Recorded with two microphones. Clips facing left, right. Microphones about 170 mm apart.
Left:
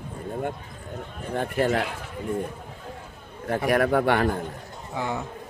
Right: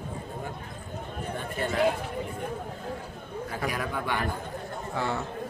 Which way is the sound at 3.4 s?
65° left (ahead or behind).